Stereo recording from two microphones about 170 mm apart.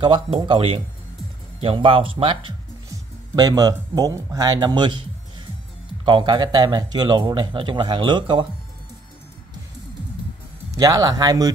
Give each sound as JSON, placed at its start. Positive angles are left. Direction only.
{"t": 0.0, "sound": "speech", "side_deg": -30}
{"t": 6.0, "sound": "speech", "side_deg": -25}
{"t": 10.7, "sound": "speech", "side_deg": -20}